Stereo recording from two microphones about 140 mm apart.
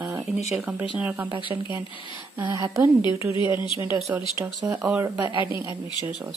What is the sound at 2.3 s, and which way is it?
Speech, 20° right (ahead or behind).